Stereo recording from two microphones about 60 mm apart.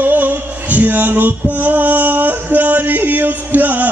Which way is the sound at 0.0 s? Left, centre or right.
Right.